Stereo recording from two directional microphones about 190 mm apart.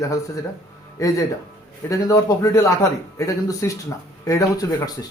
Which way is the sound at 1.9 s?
15° left (ahead or behind).